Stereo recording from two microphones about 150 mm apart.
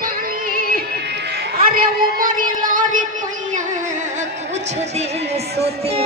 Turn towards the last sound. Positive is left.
turn(degrees=-40)  # may be behind; listen again after turning